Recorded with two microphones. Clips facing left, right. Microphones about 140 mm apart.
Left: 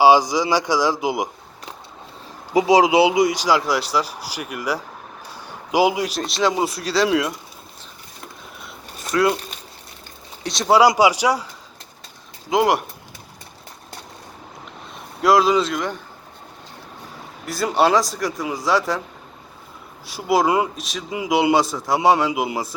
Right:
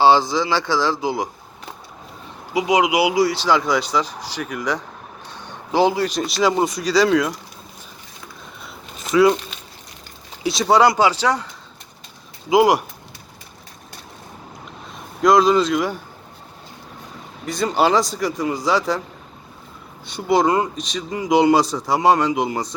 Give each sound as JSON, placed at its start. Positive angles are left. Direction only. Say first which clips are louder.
{"t": 0.0, "sound": "speech", "louder": "left 1 dB", "side_deg": 15}
{"t": 2.5, "sound": "speech", "louder": "left 3 dB", "side_deg": 35}
{"t": 5.3, "sound": "a sound", "louder": "even", "side_deg": 10}
{"t": 6.1, "sound": "speech", "louder": "right 2 dB", "side_deg": 0}
{"t": 8.6, "sound": "a sound", "louder": "right 1 dB", "side_deg": 0}
{"t": 10.4, "sound": "speech", "louder": "even", "side_deg": 0}
{"t": 12.5, "sound": "speech", "louder": "right 3 dB", "side_deg": 0}
{"t": 15.2, "sound": "speech", "louder": "right 2 dB", "side_deg": 5}
{"t": 17.4, "sound": "speech", "louder": "even", "side_deg": 5}
{"t": 20.1, "sound": "speech", "louder": "right 1 dB", "side_deg": 5}